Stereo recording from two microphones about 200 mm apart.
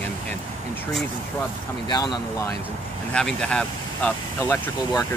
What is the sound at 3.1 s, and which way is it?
Speech, 5° left (ahead or behind).